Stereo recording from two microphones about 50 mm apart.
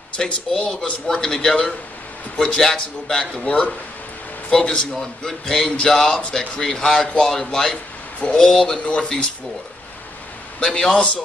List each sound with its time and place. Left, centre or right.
0.2 s a man's voice: centre
10.6 s a man's voice: centre